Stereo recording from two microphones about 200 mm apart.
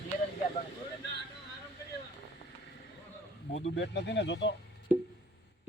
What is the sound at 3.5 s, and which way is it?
Speech, 70° left (ahead or behind).